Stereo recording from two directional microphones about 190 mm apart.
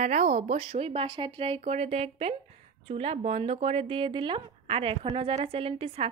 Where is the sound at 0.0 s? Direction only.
40° right (ahead or behind).